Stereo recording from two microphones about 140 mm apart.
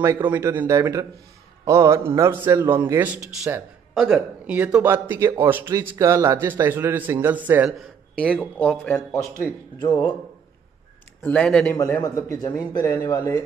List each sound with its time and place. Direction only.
0.0 s a man's voice: 15° right (ahead or behind)
7.7 s a man's voice: 5° left (ahead or behind)
11.2 s a man's voice: 5° left (ahead or behind)
11.8 s speech: 25° left (ahead or behind)